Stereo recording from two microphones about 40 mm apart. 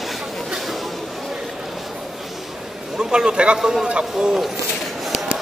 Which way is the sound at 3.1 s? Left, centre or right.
Right.